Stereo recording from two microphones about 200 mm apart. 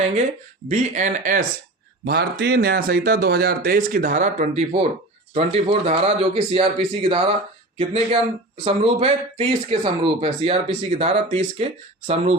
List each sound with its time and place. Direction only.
0.7 s speech: 35° right (ahead or behind)
2.0 s a man's voice: 55° right (ahead or behind); by 12.4 s 30° right (ahead or behind)